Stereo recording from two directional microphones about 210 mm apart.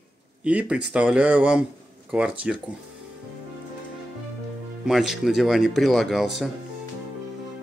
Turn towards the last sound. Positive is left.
turn(degrees=0)  # may be behind; listen again after turning